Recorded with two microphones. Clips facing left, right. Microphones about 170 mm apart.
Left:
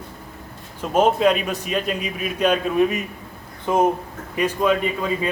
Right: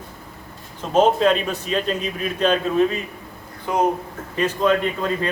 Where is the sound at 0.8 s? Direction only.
10° left (ahead or behind).